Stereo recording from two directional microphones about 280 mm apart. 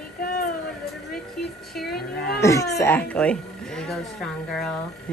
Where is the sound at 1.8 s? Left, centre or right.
Left.